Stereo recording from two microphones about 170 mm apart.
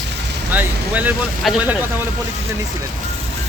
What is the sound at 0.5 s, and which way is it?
Speech, 10° right (ahead or behind).